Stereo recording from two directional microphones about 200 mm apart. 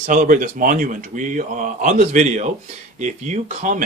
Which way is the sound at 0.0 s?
40° right (ahead or behind).